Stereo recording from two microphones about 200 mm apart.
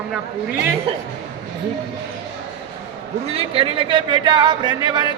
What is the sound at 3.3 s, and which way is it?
Speech, 30° right (ahead or behind).